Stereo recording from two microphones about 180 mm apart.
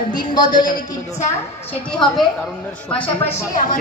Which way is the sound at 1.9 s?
5° left (ahead or behind).